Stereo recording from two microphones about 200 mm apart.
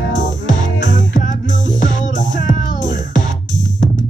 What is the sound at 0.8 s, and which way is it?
Music, 40° left (ahead or behind).